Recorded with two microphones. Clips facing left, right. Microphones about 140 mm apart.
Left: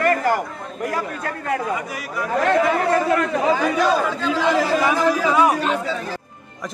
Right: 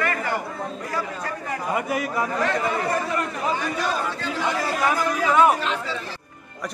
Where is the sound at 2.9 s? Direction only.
90° left.